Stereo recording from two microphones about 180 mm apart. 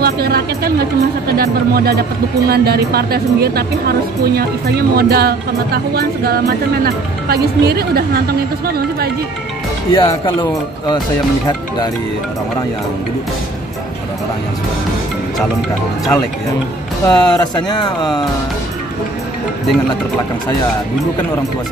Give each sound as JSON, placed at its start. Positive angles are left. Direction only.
{"t": 0.0, "sound": "speech", "side_deg": -60}
{"t": 9.9, "sound": "speech", "side_deg": 25}
{"t": 17.0, "sound": "speech", "side_deg": 25}